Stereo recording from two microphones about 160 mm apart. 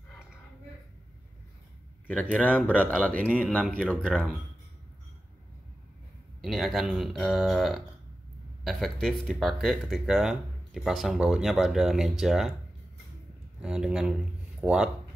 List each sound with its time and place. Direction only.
2.0 s speech: 10° left (ahead or behind)
6.4 s speech: centre (ahead or behind)
13.6 s speech: 5° right (ahead or behind)